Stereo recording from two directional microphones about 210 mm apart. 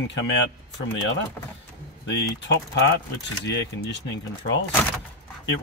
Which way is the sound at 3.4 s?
60° left (ahead or behind).